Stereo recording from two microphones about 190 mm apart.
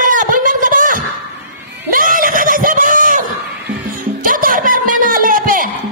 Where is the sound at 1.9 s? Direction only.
50° right (ahead or behind).